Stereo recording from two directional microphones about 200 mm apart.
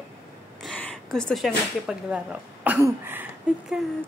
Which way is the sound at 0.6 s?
5° left (ahead or behind).